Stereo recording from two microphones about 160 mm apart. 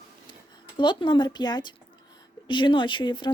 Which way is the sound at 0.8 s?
30° left (ahead or behind).